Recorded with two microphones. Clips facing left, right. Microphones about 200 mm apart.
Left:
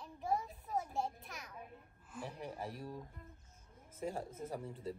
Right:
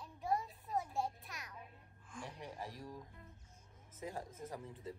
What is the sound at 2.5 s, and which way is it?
Speech, 30° left (ahead or behind).